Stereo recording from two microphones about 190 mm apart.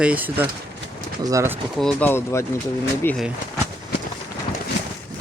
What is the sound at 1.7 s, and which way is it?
Speech, 5° left (ahead or behind).